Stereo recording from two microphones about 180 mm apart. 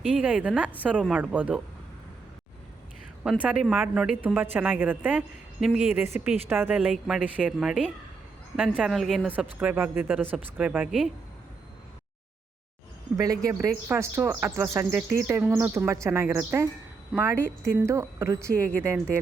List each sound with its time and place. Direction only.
0.2 s speech: 5° right (ahead or behind)
3.4 s a woman's voice: 5° right (ahead or behind)
13.1 s speech: 20° right (ahead or behind)